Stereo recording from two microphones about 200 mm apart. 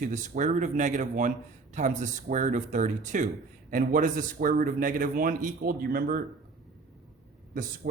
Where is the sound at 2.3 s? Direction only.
40° right (ahead or behind).